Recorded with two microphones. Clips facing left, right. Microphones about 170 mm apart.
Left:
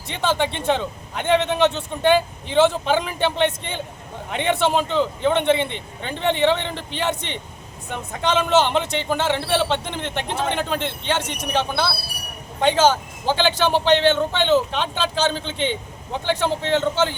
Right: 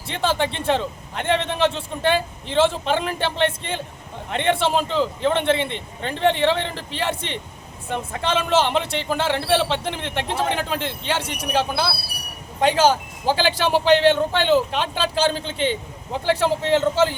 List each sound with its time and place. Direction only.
0.1 s speech: centre (ahead or behind)